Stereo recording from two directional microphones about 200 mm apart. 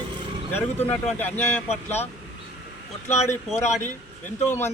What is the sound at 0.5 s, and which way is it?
A man's voice, 10° left (ahead or behind).